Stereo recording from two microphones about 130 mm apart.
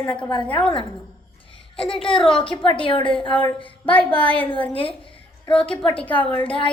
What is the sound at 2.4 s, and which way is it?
Speech, 40° left (ahead or behind).